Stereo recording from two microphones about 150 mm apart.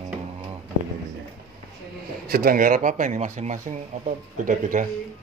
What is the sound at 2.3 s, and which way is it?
Speech, 70° right (ahead or behind).